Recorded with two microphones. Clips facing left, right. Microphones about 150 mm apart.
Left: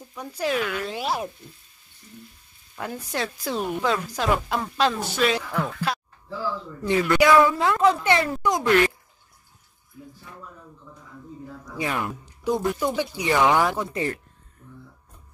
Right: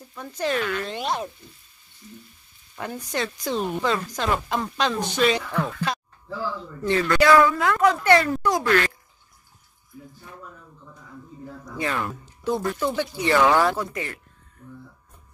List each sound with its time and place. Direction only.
0.1 s speech: 10° left (ahead or behind)
2.7 s speech: centre (ahead or behind)
7.4 s speech: 25° left (ahead or behind)
11.7 s speech: 10° left (ahead or behind)
13.9 s speech: 40° left (ahead or behind)